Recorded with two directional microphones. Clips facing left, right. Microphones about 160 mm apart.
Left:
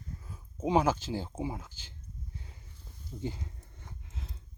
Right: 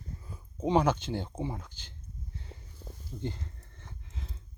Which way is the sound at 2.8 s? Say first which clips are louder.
Right 13 dB; 80° right.